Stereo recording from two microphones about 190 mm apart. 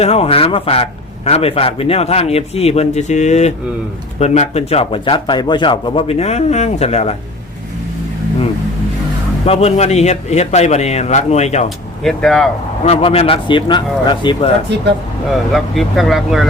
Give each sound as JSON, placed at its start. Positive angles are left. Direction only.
{"t": 0.0, "sound": "a man's voice", "side_deg": 30}
{"t": 9.5, "sound": "a man's voice", "side_deg": 35}
{"t": 12.0, "sound": "speech", "side_deg": 0}
{"t": 12.8, "sound": "a man's voice", "side_deg": 30}
{"t": 15.5, "sound": "speech", "side_deg": 0}